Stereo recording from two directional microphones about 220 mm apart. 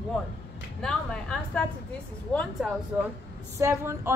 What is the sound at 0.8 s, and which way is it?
Speech, 5° left (ahead or behind).